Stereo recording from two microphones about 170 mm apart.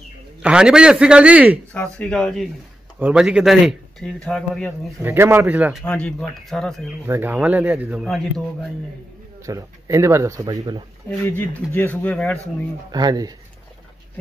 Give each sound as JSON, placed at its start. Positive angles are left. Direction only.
{"t": 0.4, "sound": "speech", "side_deg": -5}
{"t": 1.7, "sound": "speech", "side_deg": 5}
{"t": 5.0, "sound": "speech", "side_deg": -15}
{"t": 5.9, "sound": "speech", "side_deg": 5}
{"t": 7.1, "sound": "speech", "side_deg": -10}
{"t": 9.5, "sound": "speech", "side_deg": -20}
{"t": 11.1, "sound": "speech", "side_deg": 10}
{"t": 12.9, "sound": "speech", "side_deg": -20}